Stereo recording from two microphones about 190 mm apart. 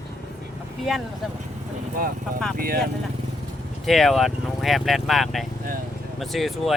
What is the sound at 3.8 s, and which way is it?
Speech, centre (ahead or behind).